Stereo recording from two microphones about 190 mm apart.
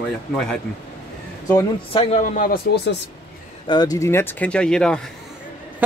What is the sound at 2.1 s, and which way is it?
Speech, 40° left (ahead or behind).